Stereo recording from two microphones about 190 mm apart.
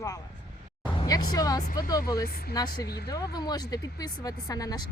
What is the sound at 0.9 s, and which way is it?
Speech, 20° left (ahead or behind).